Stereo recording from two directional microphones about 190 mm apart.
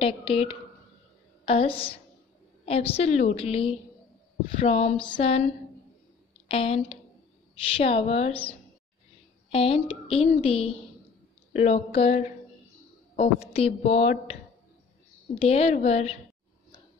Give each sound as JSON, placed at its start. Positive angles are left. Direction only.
{"t": 0.0, "sound": "a woman's voice", "side_deg": 30}
{"t": 6.5, "sound": "a woman's voice", "side_deg": 30}
{"t": 15.3, "sound": "a woman's voice", "side_deg": 30}